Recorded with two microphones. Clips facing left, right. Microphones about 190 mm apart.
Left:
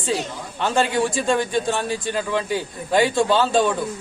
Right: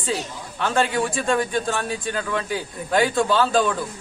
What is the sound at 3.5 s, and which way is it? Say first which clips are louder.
Speech: left 1 dB; 25° left (ahead or behind).